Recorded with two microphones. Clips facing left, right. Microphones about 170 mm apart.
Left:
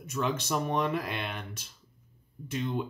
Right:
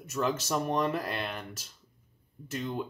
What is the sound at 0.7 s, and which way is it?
Speech, 40° right (ahead or behind).